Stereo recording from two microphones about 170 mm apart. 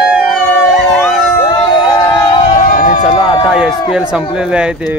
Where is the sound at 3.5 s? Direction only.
5° right (ahead or behind).